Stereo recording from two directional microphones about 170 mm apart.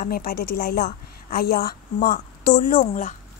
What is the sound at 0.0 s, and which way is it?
A woman's voice, 60° left (ahead or behind).